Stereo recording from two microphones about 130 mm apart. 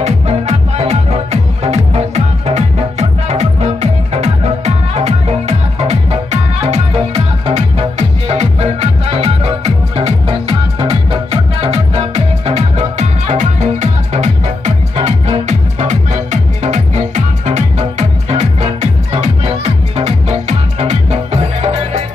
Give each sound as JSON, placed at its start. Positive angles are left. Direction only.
{"t": 0.0, "sound": "music", "side_deg": -55}